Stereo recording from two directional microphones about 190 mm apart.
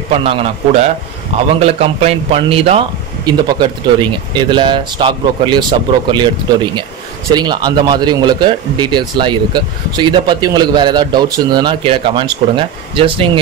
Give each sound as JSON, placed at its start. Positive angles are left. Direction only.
{"t": 0.1, "sound": "a man's voice", "side_deg": -30}